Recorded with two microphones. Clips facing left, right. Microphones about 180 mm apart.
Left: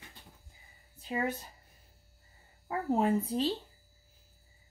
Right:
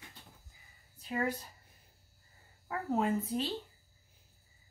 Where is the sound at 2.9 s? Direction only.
30° left (ahead or behind).